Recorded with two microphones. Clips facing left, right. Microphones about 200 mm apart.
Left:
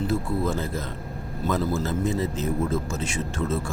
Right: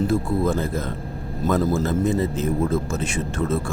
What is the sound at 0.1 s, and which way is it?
Speech, 50° right (ahead or behind).